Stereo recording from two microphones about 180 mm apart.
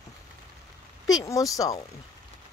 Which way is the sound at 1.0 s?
20° left (ahead or behind).